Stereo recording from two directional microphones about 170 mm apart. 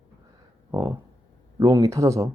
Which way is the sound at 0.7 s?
20° right (ahead or behind).